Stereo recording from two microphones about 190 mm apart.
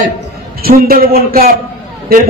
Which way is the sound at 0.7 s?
50° right (ahead or behind).